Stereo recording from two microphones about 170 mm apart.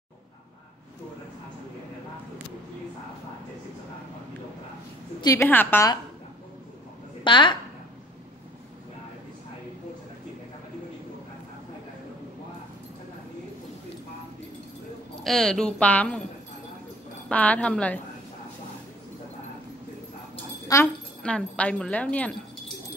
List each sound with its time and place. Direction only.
5.2 s speech: 15° left (ahead or behind)
7.2 s a woman's voice: 30° left (ahead or behind)
15.2 s a woman's voice: centre (ahead or behind)
17.3 s speech: 10° left (ahead or behind)
20.8 s speech: 5° left (ahead or behind)